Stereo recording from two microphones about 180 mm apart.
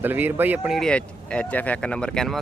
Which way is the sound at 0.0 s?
10° right (ahead or behind).